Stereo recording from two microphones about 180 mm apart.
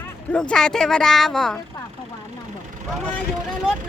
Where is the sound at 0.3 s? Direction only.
5° left (ahead or behind).